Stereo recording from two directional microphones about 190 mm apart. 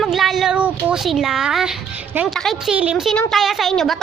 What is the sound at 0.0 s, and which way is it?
A woman's voice, centre (ahead or behind).